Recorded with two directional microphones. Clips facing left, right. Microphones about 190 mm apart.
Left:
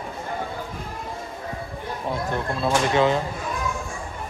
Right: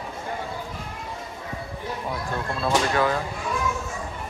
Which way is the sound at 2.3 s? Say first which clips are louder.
Even; 20° left (ahead or behind).